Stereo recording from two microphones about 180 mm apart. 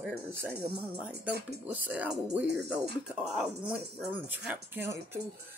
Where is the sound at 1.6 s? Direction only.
10° right (ahead or behind).